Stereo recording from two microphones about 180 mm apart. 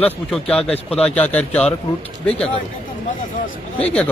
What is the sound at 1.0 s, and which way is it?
Speech, 10° left (ahead or behind).